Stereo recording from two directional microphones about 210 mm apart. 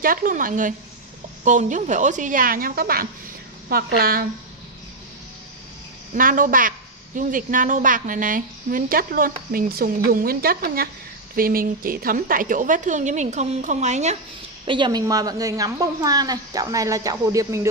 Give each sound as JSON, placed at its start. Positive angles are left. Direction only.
{"t": 0.0, "sound": "a woman's voice", "side_deg": -40}
{"t": 6.1, "sound": "a woman's voice", "side_deg": -40}
{"t": 14.7, "sound": "a woman's voice", "side_deg": -20}